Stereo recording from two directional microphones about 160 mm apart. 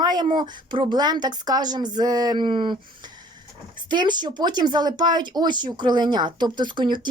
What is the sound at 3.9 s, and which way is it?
Speech, 30° right (ahead or behind).